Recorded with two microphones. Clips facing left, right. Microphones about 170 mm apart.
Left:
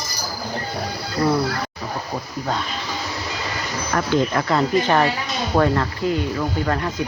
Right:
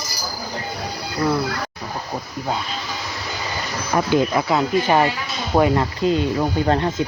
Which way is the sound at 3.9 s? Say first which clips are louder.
Right 2 dB; 15° right (ahead or behind).